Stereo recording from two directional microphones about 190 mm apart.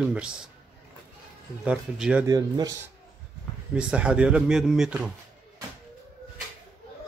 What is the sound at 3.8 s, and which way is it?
Speech, 5° right (ahead or behind).